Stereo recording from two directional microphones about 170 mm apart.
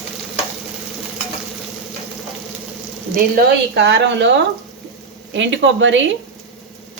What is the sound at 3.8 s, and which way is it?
A woman's voice, 90° right.